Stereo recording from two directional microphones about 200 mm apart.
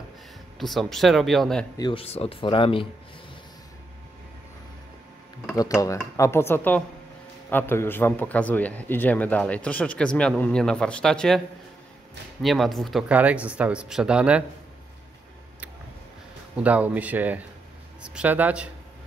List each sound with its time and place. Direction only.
0.6 s speech: centre (ahead or behind)
1.8 s speech: 25° left (ahead or behind)
5.6 s a man's voice: 15° left (ahead or behind); by 14.4 s 5° right (ahead or behind)
16.5 s speech: 5° right (ahead or behind)